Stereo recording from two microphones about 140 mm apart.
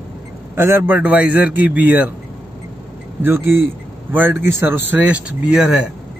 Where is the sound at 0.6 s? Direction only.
15° right (ahead or behind).